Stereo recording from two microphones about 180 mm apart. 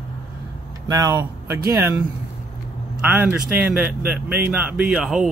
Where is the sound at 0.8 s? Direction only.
20° right (ahead or behind).